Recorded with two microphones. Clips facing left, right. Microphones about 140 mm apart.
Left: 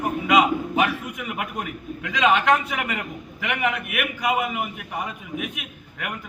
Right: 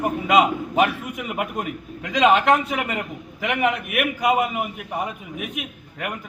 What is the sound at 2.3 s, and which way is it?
A man's voice, 35° right (ahead or behind).